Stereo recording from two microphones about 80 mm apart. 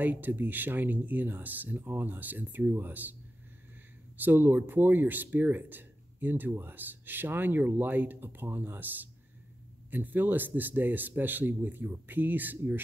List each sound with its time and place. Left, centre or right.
0.0 s speech: right
4.2 s speech: right